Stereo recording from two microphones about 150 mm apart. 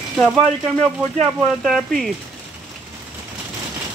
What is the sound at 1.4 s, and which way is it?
Speech, centre (ahead or behind).